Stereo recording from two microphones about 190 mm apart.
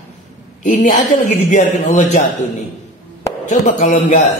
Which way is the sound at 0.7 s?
40° left (ahead or behind).